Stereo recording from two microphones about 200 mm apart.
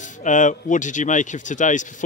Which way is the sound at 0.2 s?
40° left (ahead or behind).